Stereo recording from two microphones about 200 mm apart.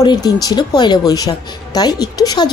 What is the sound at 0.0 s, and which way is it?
A woman's voice, 20° left (ahead or behind).